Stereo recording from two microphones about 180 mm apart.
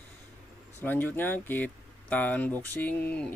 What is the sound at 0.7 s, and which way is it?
Speech, 10° left (ahead or behind).